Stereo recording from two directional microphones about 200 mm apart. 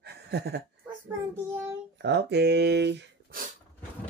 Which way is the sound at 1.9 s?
60° right (ahead or behind).